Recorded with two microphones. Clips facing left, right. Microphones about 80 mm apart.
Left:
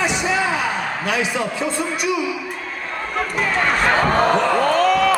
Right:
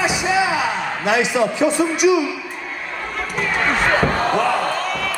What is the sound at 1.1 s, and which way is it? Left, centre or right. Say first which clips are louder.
A man's voice: right 6 dB; centre.